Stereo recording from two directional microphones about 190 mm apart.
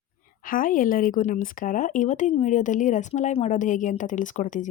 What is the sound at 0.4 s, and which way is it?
Speech, 45° left (ahead or behind).